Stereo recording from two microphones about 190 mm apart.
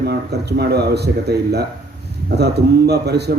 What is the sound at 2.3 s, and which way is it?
A man's voice, 60° right (ahead or behind).